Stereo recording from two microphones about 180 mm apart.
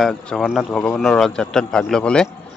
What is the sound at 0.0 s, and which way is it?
Speech, centre (ahead or behind).